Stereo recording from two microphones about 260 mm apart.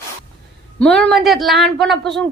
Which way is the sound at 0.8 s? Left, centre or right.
Centre.